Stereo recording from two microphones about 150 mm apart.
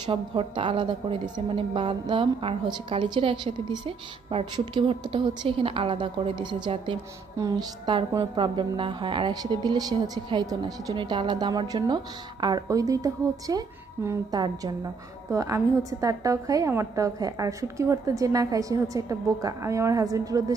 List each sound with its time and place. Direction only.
0.0 s a woman's voice: 35° right (ahead or behind)